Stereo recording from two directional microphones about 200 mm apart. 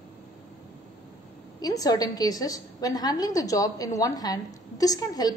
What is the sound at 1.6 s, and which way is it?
A woman's voice, 20° left (ahead or behind).